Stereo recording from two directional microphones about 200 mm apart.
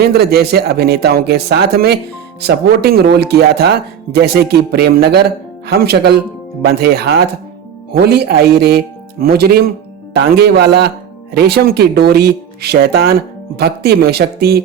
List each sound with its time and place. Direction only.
0.0 s speech: 50° right (ahead or behind)